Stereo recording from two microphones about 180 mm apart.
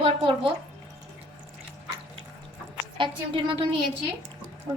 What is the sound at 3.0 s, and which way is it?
Speech, 30° right (ahead or behind).